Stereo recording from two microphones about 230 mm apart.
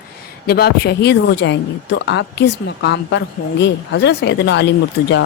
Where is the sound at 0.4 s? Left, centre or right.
Left.